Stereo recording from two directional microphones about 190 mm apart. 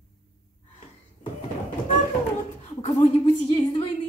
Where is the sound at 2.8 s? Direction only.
35° left (ahead or behind).